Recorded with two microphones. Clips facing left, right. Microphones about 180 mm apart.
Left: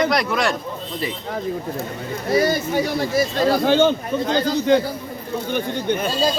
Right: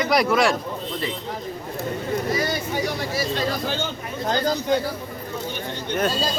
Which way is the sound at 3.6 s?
65° left (ahead or behind).